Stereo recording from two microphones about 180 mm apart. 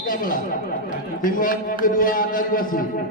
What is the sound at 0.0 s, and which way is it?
Chatter, 50° left (ahead or behind).